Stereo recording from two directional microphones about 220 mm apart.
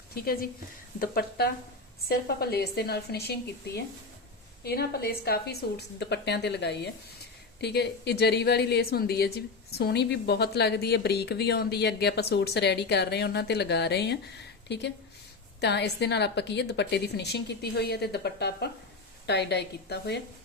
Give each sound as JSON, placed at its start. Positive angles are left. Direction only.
{"t": 0.9, "sound": "speech", "side_deg": 40}
{"t": 4.6, "sound": "speech", "side_deg": 45}